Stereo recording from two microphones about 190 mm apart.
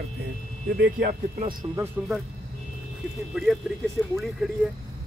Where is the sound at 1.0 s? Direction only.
45° right (ahead or behind).